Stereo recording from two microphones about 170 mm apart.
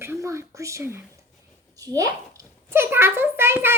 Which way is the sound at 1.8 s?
20° right (ahead or behind).